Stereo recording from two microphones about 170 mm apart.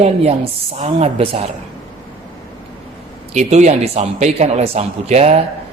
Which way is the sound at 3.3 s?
40° right (ahead or behind).